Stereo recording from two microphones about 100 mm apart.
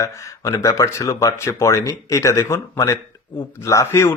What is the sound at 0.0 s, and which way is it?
Speech, 35° left (ahead or behind).